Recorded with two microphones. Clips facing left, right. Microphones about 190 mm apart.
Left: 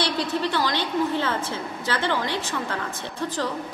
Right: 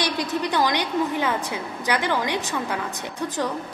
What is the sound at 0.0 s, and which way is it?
A woman's voice, 15° right (ahead or behind).